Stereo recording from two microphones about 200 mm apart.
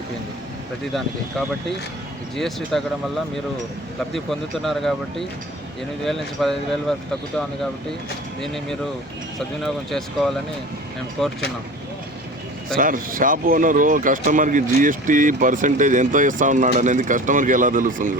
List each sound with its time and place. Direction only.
2.3 s speech: centre (ahead or behind)
4.1 s speech: centre (ahead or behind)
8.4 s speech: centre (ahead or behind)
12.7 s speech: 45° right (ahead or behind)